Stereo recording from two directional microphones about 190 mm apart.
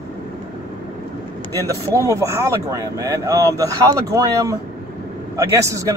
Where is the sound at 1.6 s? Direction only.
15° right (ahead or behind).